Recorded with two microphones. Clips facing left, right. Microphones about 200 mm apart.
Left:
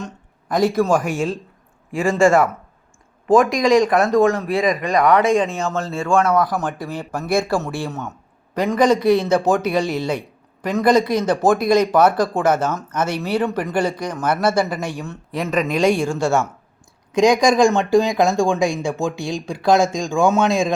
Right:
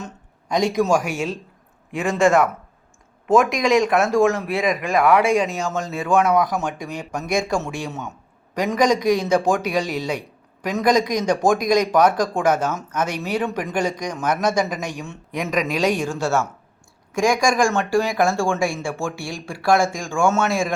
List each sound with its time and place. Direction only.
0.0 s a sound: 5° left (ahead or behind)
0.7 s speech: 15° right (ahead or behind)
6.5 s speech: 5° left (ahead or behind)
6.8 s speech: 15° right (ahead or behind)
7.1 s speech: 5° left (ahead or behind)
8.5 s speech: 10° right (ahead or behind)
16.2 s speech: 15° left (ahead or behind)